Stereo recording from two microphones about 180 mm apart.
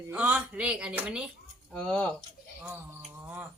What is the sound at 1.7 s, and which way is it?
Speech, 5° left (ahead or behind).